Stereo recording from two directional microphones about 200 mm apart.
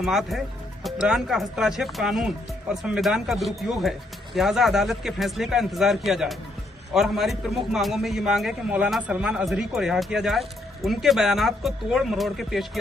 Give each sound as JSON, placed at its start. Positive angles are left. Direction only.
{"t": 0.0, "sound": "a man's voice", "side_deg": 0}